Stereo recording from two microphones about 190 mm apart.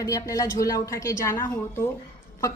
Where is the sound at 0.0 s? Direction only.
15° left (ahead or behind).